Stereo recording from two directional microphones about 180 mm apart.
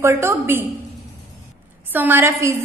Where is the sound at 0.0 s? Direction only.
15° right (ahead or behind).